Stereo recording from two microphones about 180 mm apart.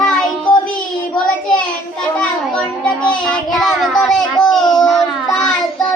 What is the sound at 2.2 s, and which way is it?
Child singing, 5° left (ahead or behind).